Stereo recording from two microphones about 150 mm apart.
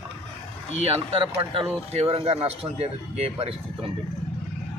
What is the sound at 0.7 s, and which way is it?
Speech, 40° right (ahead or behind).